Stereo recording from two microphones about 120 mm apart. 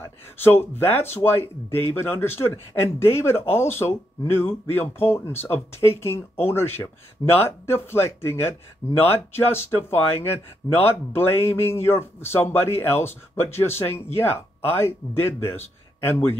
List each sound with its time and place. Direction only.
0.0 s a man's voice: 20° left (ahead or behind)